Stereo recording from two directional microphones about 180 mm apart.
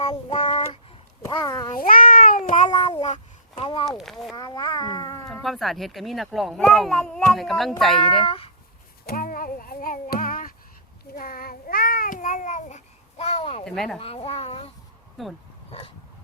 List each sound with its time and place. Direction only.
0.0 s child singing: 30° left (ahead or behind)
1.2 s speech: 20° left (ahead or behind)
1.8 s meow: 50° left (ahead or behind)
2.6 s a sound: 25° left (ahead or behind)
3.8 s speech: centre (ahead or behind)
4.4 s speech: 20° left (ahead or behind)
5.3 s speech: centre (ahead or behind)
8.0 s speech: 30° left (ahead or behind)
9.0 s child singing: 55° left (ahead or behind); by 13.7 s 35° left (ahead or behind)
13.7 s speech: centre (ahead or behind)
14.0 s speech: 30° left (ahead or behind)
15.2 s speech: centre (ahead or behind)